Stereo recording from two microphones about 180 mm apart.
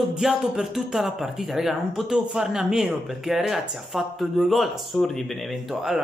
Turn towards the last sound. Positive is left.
turn(degrees=0)  # may be behind; listen again after turning